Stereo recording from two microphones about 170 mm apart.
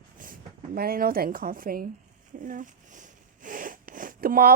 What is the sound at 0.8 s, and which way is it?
A woman's voice, 60° right (ahead or behind).